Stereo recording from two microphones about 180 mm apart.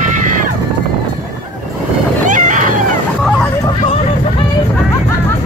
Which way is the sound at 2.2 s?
45° right (ahead or behind).